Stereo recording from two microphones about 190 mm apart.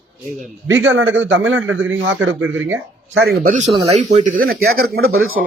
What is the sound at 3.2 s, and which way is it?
Speech, 55° right (ahead or behind).